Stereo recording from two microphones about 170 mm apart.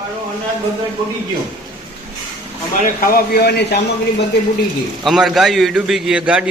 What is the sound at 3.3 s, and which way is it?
Speech, 70° left (ahead or behind).